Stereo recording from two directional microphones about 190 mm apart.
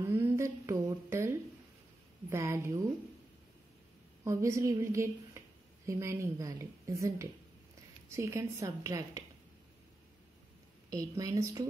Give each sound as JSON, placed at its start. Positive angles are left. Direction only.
{"t": 0.0, "sound": "humming", "side_deg": -15}
{"t": 2.2, "sound": "a woman's voice", "side_deg": -15}
{"t": 4.2, "sound": "a woman's voice", "side_deg": -15}
{"t": 10.9, "sound": "a woman's voice", "side_deg": -15}